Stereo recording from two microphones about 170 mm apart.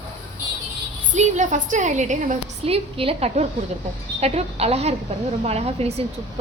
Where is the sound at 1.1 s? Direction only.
45° right (ahead or behind).